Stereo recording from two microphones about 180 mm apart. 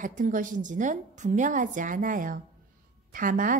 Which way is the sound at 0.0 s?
45° right (ahead or behind).